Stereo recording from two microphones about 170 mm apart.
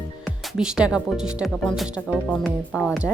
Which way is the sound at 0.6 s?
5° right (ahead or behind).